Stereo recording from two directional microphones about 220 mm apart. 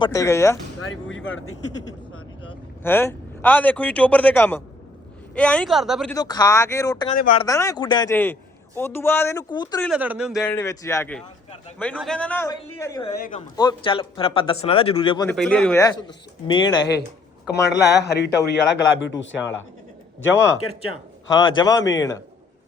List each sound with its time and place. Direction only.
0.0 s a man's voice: 15° left (ahead or behind)
1.1 s speech: 60° left (ahead or behind)
2.8 s a man's voice: 10° left (ahead or behind)
6.1 s a man's voice: 15° left (ahead or behind)
9.8 s a man's voice: 5° right (ahead or behind)
10.4 s a man's voice: 10° left (ahead or behind)
15.3 s a man's voice: 5° left (ahead or behind)
15.8 s speech: 15° left (ahead or behind)
17.5 s a man's voice: 50° left (ahead or behind)
21.2 s a man's voice: 20° left (ahead or behind)